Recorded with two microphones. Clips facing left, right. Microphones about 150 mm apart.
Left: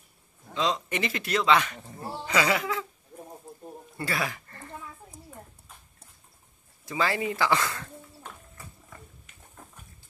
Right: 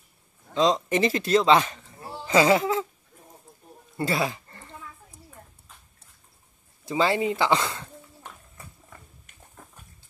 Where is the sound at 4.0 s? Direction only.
25° right (ahead or behind).